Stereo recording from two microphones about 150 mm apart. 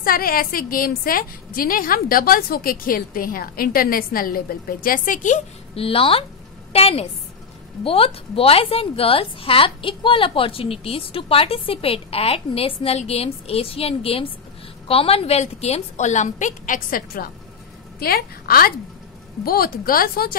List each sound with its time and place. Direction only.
0.0 s a woman's voice: 75° left (ahead or behind); by 5.4 s 60° left (ahead or behind)
5.8 s a woman's voice: 40° left (ahead or behind); by 17.3 s 75° left (ahead or behind)
17.9 s a woman's voice: 90° left